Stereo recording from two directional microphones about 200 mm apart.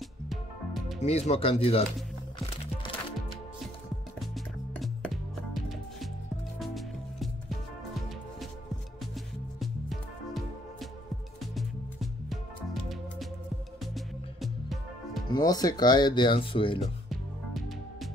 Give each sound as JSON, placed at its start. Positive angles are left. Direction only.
{"t": 0.3, "sound": "music", "side_deg": 0}
{"t": 1.0, "sound": "speech", "side_deg": 30}
{"t": 2.3, "sound": "music", "side_deg": 25}
{"t": 4.7, "sound": "music", "side_deg": 0}
{"t": 9.0, "sound": "music", "side_deg": 0}
{"t": 13.9, "sound": "music", "side_deg": 0}
{"t": 15.2, "sound": "speech", "side_deg": 20}
{"t": 17.1, "sound": "music", "side_deg": 0}